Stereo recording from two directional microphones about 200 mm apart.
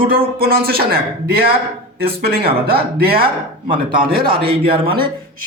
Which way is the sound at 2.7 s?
50° right (ahead or behind).